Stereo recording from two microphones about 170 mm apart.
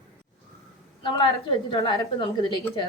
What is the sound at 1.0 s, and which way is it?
Speech, 30° left (ahead or behind).